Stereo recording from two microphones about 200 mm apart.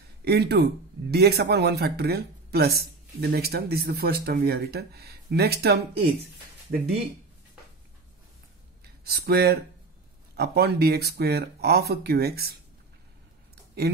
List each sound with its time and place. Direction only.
0.2 s speech: 55° right (ahead or behind)
9.0 s speech: 50° right (ahead or behind)